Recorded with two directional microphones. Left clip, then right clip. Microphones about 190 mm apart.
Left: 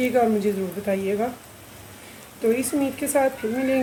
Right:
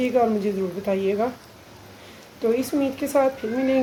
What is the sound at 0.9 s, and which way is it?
Speech, 20° right (ahead or behind).